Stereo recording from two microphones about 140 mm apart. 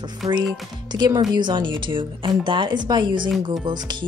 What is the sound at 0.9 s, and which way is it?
Speech, 30° right (ahead or behind).